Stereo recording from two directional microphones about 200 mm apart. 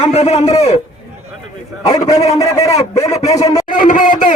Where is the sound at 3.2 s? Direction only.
35° left (ahead or behind).